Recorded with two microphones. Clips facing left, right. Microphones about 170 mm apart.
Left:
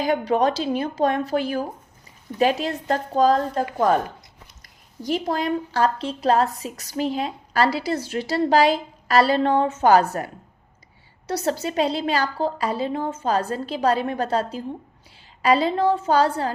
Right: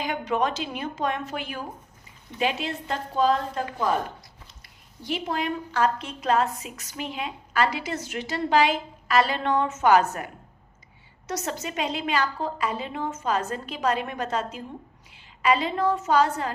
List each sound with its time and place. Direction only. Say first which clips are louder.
0.0 s a woman's voice: left 6 dB; 35° left (ahead or behind)
5.0 s a woman's voice: left 5 dB; 40° left (ahead or behind)